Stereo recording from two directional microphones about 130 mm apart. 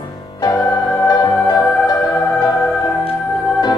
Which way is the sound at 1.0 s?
30° left (ahead or behind).